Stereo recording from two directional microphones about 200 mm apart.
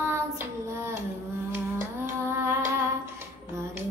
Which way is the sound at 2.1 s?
10° right (ahead or behind).